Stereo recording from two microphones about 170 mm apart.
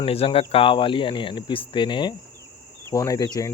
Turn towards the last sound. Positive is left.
turn(degrees=20)  # may be behind; listen again after turning